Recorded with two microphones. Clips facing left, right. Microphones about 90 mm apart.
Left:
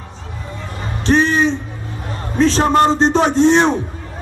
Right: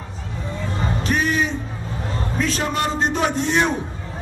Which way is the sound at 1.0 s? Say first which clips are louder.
Left 8 dB; 30° left (ahead or behind).